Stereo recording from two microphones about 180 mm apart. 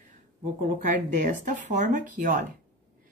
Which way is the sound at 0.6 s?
45° right (ahead or behind).